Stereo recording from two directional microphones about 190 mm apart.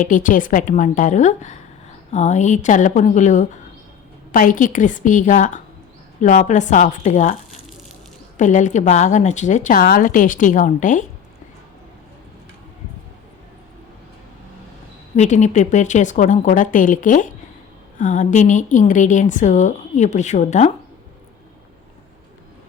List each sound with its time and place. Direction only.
0.0 s a woman's voice: 45° left (ahead or behind)
15.1 s a woman's voice: 40° left (ahead or behind)